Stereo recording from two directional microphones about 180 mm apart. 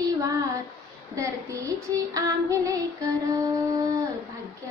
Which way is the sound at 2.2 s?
20° right (ahead or behind).